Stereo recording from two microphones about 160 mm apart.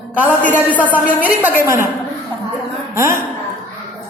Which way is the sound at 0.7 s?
10° left (ahead or behind).